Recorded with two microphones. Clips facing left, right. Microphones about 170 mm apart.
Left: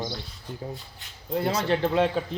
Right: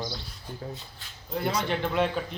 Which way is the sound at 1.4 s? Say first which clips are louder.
Left 3 dB; 35° left (ahead or behind).